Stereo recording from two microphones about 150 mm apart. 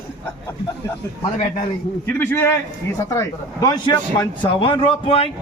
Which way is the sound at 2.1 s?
15° left (ahead or behind).